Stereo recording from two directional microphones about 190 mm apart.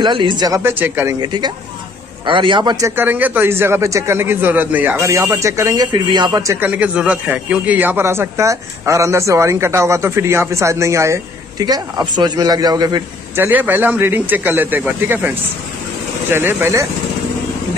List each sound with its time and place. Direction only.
0.0 s speech: 25° right (ahead or behind)
3.0 s a man's voice: 10° right (ahead or behind)
13.5 s a man's voice: 10° right (ahead or behind)